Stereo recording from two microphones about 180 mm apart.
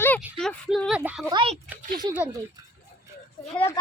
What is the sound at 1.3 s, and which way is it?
Speech, 30° right (ahead or behind).